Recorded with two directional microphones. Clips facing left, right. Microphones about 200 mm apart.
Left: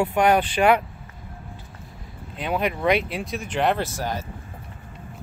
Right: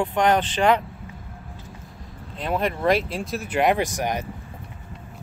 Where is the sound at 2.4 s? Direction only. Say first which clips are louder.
Even; centre (ahead or behind); by 4.3 s 15° right (ahead or behind).